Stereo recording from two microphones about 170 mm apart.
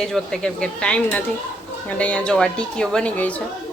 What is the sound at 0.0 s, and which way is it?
A woman's voice, 5° left (ahead or behind).